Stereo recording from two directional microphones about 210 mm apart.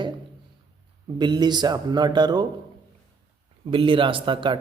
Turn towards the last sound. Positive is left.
turn(degrees=-25)  # may be behind; listen again after turning